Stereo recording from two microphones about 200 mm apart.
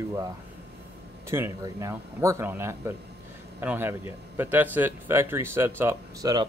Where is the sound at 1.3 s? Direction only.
15° right (ahead or behind).